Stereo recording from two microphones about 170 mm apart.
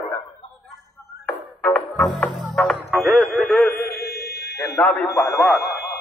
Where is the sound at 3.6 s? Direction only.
10° left (ahead or behind).